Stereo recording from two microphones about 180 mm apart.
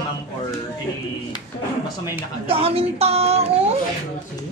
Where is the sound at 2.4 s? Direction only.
35° right (ahead or behind).